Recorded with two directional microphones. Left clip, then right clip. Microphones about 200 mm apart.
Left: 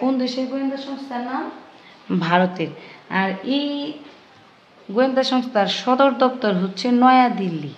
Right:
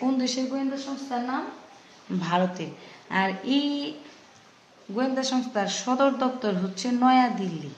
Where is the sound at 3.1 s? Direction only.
25° left (ahead or behind).